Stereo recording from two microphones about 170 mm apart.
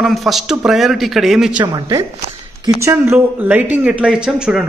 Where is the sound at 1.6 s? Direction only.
20° right (ahead or behind).